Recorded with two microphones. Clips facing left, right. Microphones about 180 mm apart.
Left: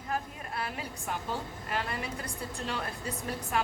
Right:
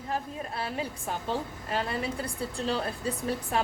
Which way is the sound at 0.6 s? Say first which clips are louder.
Right 2 dB; 30° right (ahead or behind).